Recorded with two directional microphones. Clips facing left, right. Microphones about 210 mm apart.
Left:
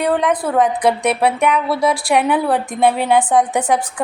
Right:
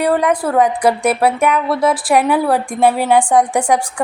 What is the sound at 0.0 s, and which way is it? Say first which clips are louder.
A woman's voice: right 2 dB; 10° right (ahead or behind).